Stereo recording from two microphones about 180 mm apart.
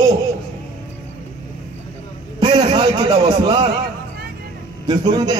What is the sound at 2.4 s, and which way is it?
A man's voice, 25° right (ahead or behind).